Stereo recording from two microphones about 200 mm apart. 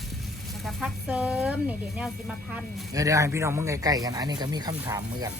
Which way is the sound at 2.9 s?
15° right (ahead or behind).